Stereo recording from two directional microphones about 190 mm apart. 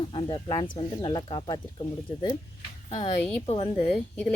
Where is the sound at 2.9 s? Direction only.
35° left (ahead or behind).